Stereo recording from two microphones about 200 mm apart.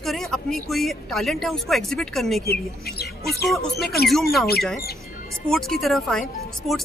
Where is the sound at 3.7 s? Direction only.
50° left (ahead or behind).